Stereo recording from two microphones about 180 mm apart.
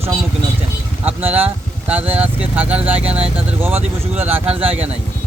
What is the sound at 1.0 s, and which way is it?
Vehicle, 10° right (ahead or behind).